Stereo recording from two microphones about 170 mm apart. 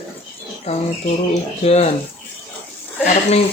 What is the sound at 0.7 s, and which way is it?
Speech, 35° left (ahead or behind).